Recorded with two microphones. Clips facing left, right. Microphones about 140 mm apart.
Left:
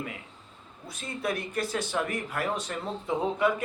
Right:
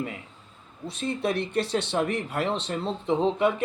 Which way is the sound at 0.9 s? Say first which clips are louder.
Right 5 dB; 25° right (ahead or behind).